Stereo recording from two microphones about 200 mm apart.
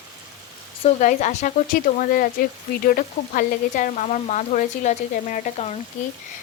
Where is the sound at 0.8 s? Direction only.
35° left (ahead or behind).